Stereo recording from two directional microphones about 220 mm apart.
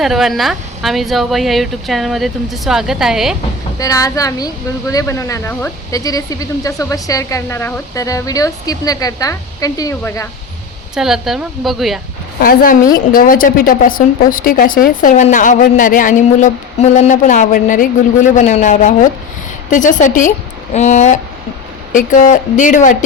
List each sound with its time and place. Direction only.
0.0 s speech: centre (ahead or behind)
3.8 s a woman's voice: 15° left (ahead or behind)
10.9 s speech: centre (ahead or behind)
12.4 s a woman's voice: 40° left (ahead or behind)